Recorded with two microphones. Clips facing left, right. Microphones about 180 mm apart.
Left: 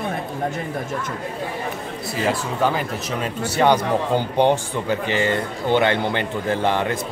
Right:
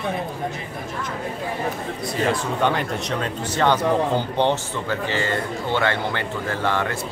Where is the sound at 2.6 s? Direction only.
5° left (ahead or behind).